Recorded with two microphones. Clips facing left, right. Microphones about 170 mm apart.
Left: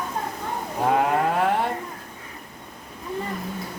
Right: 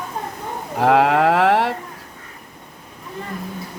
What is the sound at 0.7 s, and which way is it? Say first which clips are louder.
Sheep: right 6 dB; 80° right.